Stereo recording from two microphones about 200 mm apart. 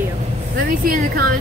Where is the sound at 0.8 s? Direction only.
45° right (ahead or behind).